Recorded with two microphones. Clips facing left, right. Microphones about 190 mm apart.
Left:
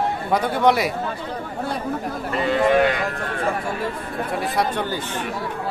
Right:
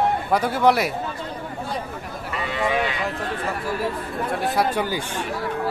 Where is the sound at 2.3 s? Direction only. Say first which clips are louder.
Left 6 dB; 50° left (ahead or behind).